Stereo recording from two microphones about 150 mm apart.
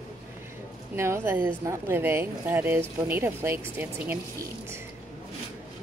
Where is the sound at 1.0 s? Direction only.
15° right (ahead or behind).